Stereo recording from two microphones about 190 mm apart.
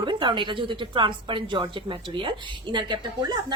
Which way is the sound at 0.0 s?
25° right (ahead or behind).